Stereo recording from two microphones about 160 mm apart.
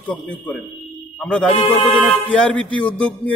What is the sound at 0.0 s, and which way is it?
A man's voice, 10° left (ahead or behind).